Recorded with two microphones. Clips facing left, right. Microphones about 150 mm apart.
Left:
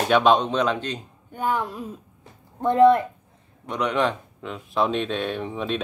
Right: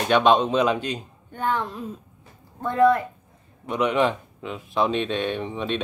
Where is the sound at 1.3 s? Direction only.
10° left (ahead or behind).